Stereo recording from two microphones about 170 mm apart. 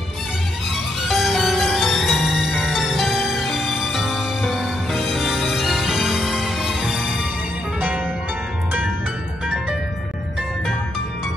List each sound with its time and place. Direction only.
1.0 s music: centre (ahead or behind)